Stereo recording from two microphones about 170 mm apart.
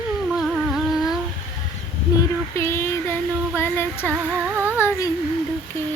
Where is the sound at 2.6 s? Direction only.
15° left (ahead or behind).